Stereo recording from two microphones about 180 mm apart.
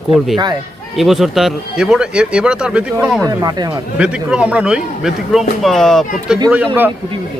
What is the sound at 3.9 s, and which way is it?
Speech, 5° right (ahead or behind).